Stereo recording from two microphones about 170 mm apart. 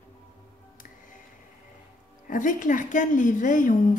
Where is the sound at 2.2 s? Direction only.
50° left (ahead or behind).